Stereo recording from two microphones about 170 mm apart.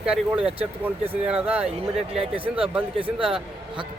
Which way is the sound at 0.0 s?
5° right (ahead or behind).